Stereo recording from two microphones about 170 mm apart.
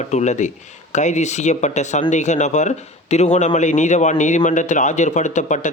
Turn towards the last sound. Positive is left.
turn(degrees=45)  # may be behind; listen again after turning